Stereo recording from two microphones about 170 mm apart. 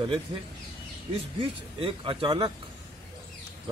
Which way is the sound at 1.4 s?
30° right (ahead or behind).